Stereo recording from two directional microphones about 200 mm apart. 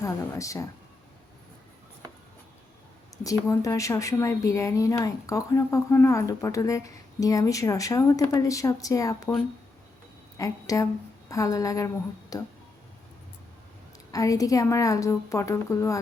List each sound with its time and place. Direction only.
0.0 s speech: 15° left (ahead or behind)
3.2 s speech: 15° left (ahead or behind)
10.3 s a woman's voice: 15° left (ahead or behind)
14.1 s speech: 15° left (ahead or behind)